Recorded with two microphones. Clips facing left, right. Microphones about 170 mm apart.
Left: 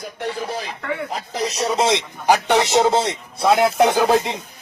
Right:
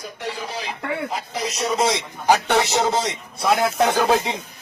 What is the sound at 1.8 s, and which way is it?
Speech, 20° left (ahead or behind).